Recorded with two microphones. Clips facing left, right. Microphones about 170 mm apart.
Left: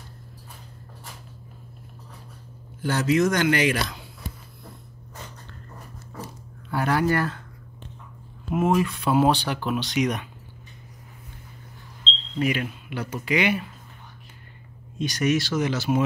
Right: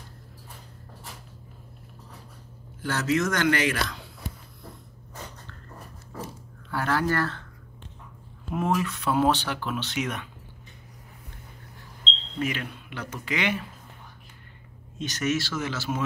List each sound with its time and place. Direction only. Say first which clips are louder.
2.8 s speech: left 4 dB; 15° left (ahead or behind)
6.7 s speech: left 3 dB; 15° left (ahead or behind)
8.5 s speech: left 4 dB; 15° left (ahead or behind)
12.4 s speech: left 5 dB; 10° left (ahead or behind)
15.0 s speech: left 4 dB; 10° left (ahead or behind)